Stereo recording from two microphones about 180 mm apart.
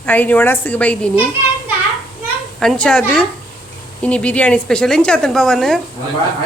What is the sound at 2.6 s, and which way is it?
Speech, 5° left (ahead or behind).